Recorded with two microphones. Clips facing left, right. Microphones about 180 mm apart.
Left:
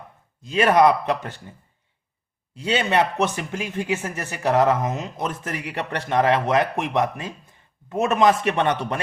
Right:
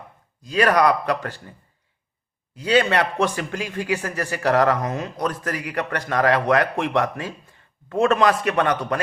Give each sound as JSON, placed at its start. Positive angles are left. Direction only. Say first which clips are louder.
{"t": 0.4, "sound": "speech", "louder": "left 1 dB", "side_deg": 25}
{"t": 2.6, "sound": "speech", "louder": "right 2 dB", "side_deg": 25}